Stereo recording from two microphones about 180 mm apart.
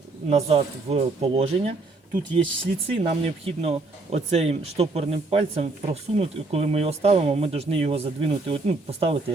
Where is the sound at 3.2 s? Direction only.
35° right (ahead or behind).